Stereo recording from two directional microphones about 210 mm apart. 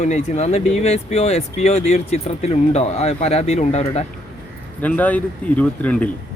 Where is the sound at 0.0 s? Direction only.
30° left (ahead or behind).